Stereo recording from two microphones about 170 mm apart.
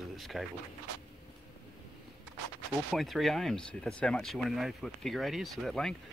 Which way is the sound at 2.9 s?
Centre (ahead or behind).